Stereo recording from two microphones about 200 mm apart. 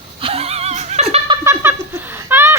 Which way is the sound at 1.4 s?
10° right (ahead or behind).